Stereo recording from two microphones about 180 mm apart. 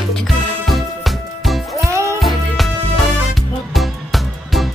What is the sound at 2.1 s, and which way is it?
Music, centre (ahead or behind).